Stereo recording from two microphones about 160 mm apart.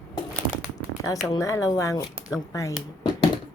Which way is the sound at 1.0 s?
20° left (ahead or behind).